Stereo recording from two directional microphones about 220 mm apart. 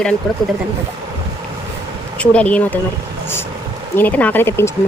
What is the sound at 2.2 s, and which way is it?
Speech, 5° left (ahead or behind).